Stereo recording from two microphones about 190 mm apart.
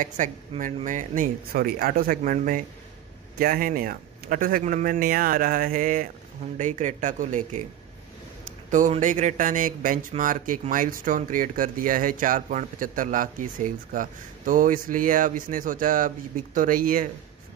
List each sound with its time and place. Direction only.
0.0 s speech: 40° right (ahead or behind)
8.6 s speech: 40° right (ahead or behind)